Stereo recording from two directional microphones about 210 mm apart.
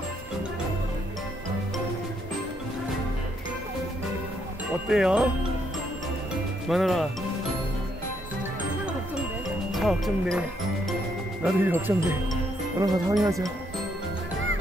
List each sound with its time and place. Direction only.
4.8 s speech: 5° right (ahead or behind)
6.7 s speech: centre (ahead or behind)
9.7 s speech: centre (ahead or behind)
11.4 s speech: 10° right (ahead or behind)
12.7 s music: 20° right (ahead or behind)
13.1 s speech: centre (ahead or behind)